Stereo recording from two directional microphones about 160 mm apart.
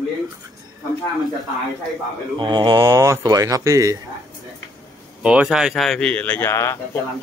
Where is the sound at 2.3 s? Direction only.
30° right (ahead or behind).